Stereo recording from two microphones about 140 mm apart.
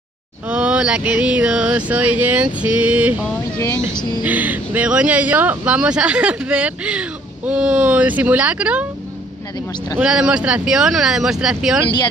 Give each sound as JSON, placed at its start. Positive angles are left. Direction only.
{"t": 0.5, "sound": "speech", "side_deg": -10}
{"t": 3.5, "sound": "speech", "side_deg": 20}
{"t": 4.2, "sound": "speech", "side_deg": -10}
{"t": 9.9, "sound": "speech", "side_deg": -5}